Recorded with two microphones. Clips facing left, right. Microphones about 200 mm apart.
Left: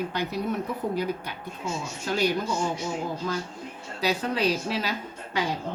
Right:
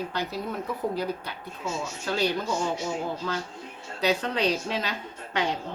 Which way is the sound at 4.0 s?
10° left (ahead or behind).